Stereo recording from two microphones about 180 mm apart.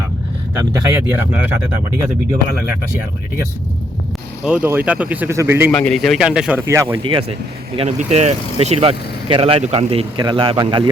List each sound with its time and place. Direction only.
0.6 s speech: 15° right (ahead or behind)
4.4 s speech: 10° right (ahead or behind)
5.7 s a man's voice: 5° left (ahead or behind); by 6.8 s 15° right (ahead or behind)
7.0 s speech: 30° right (ahead or behind)